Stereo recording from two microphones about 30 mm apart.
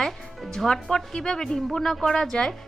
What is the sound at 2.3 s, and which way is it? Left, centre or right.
Speech, left.